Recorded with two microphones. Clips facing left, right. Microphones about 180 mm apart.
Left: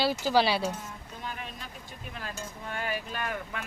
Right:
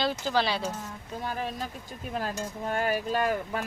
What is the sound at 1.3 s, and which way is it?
Speech, 35° right (ahead or behind).